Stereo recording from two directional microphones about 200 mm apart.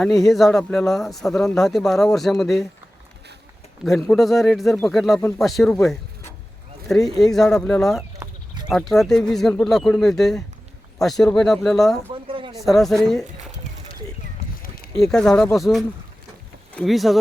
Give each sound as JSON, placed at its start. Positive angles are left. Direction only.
{"t": 0.3, "sound": "speech", "side_deg": 0}
{"t": 3.8, "sound": "speech", "side_deg": 0}
{"t": 12.3, "sound": "a sound", "side_deg": -25}
{"t": 12.6, "sound": "speech", "side_deg": 0}
{"t": 14.9, "sound": "speech", "side_deg": 5}